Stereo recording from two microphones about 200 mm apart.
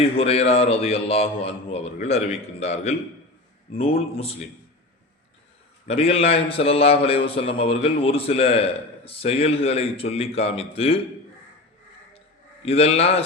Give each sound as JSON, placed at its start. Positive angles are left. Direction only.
{"t": 0.0, "sound": "a man's voice", "side_deg": 30}
{"t": 5.9, "sound": "a man's voice", "side_deg": 30}
{"t": 12.6, "sound": "a man's voice", "side_deg": 30}